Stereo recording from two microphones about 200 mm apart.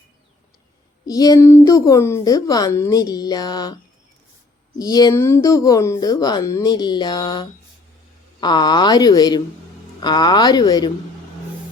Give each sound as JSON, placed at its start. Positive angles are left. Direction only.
{"t": 1.0, "sound": "a woman's voice", "side_deg": 20}
{"t": 4.8, "sound": "speech", "side_deg": 20}